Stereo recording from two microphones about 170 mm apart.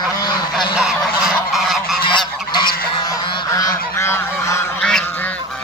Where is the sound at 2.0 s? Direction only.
25° left (ahead or behind).